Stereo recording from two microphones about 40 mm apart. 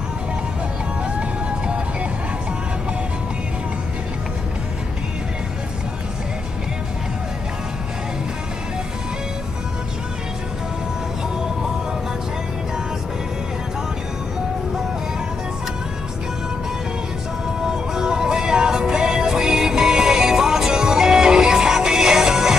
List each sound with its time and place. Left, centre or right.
17.6 s music: centre